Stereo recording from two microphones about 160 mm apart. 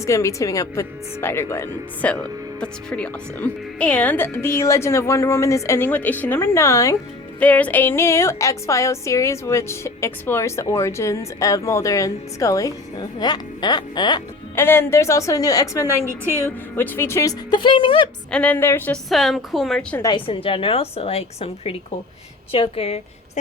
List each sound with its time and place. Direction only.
0.0 s speech: 20° left (ahead or behind)
7.3 s music: 10° left (ahead or behind); by 14.2 s 25° left (ahead or behind)
14.5 s music: 15° left (ahead or behind)
16.2 s a woman's voice: 15° right (ahead or behind)
16.7 s speech: 10° left (ahead or behind)
17.5 s a woman's voice: 30° left (ahead or behind)
18.3 s speech: 5° left (ahead or behind)
19.0 s a woman's voice: centre (ahead or behind)
20.0 s a woman's voice: 30° left (ahead or behind)